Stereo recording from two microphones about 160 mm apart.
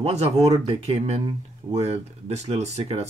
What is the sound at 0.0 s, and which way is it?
Speech, 45° right (ahead or behind).